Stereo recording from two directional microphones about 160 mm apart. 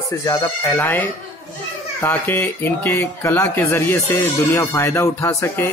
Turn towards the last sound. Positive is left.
turn(degrees=15)  # may be behind; listen again after turning